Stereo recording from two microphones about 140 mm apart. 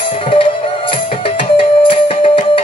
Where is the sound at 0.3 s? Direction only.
40° left (ahead or behind).